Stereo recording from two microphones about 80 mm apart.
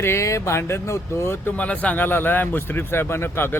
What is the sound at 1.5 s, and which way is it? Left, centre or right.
Speech, centre.